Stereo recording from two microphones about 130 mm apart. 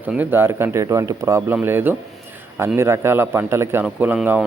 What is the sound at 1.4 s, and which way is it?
Speech, 15° right (ahead or behind).